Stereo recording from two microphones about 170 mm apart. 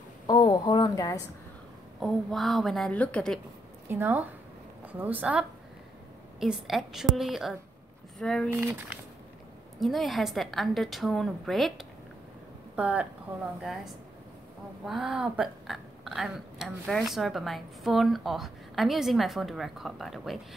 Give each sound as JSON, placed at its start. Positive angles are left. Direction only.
{"t": 0.3, "sound": "a woman's voice", "side_deg": 25}
{"t": 2.0, "sound": "speech", "side_deg": 0}
{"t": 3.9, "sound": "a woman's voice", "side_deg": -10}
{"t": 8.5, "sound": "a woman's voice", "side_deg": -10}
{"t": 9.8, "sound": "a woman's voice", "side_deg": 0}